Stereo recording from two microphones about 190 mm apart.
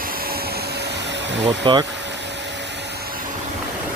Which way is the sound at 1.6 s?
25° right (ahead or behind).